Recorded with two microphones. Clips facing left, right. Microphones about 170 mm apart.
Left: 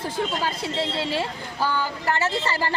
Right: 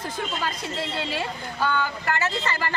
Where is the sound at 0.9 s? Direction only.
30° left (ahead or behind).